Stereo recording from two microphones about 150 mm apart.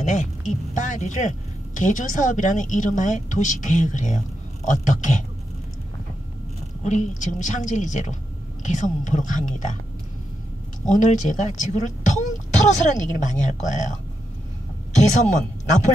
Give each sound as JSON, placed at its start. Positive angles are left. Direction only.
{"t": 0.0, "sound": "a sound", "side_deg": 50}
{"t": 1.8, "sound": "a woman's voice", "side_deg": 60}
{"t": 6.8, "sound": "a woman's voice", "side_deg": 55}
{"t": 10.9, "sound": "speech", "side_deg": 55}